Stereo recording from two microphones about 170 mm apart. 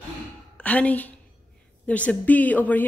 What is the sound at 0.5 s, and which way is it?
A woman's voice, 10° left (ahead or behind).